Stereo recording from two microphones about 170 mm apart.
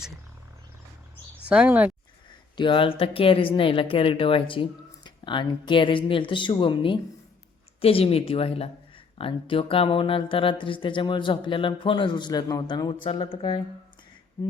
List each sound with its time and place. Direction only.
1.5 s speech: 5° right (ahead or behind)
2.6 s speech: 30° left (ahead or behind)
14.4 s finger snapping: 15° left (ahead or behind)